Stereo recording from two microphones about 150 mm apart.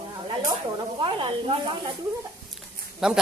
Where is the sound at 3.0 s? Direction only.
5° right (ahead or behind).